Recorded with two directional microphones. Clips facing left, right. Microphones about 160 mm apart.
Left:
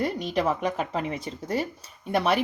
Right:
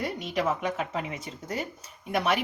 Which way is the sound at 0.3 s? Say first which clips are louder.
Even; 35° left (ahead or behind).